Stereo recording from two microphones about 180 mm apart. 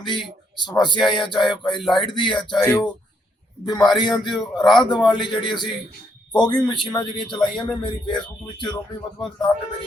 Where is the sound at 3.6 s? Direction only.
20° left (ahead or behind).